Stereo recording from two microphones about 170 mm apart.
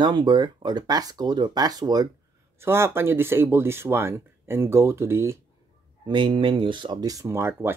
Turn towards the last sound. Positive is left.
turn(degrees=-15)  # may be behind; listen again after turning